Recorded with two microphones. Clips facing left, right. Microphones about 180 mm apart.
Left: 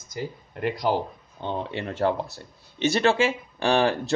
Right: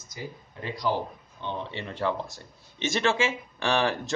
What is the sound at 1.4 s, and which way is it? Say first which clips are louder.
Speech: left 5 dB; 45° left (ahead or behind).